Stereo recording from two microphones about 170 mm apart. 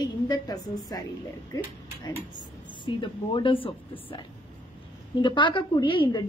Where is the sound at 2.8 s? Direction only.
30° left (ahead or behind).